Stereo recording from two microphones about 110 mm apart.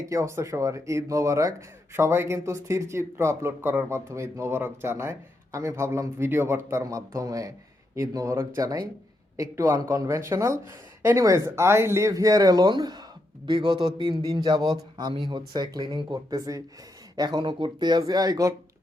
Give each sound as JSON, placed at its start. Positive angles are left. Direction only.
{"t": 0.1, "sound": "speech", "side_deg": -25}